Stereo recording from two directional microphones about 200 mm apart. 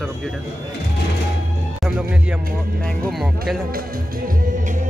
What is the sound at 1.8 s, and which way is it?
Speech, 5° right (ahead or behind).